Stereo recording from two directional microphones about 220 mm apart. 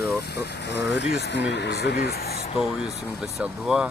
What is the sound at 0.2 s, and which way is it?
Speech, 50° left (ahead or behind).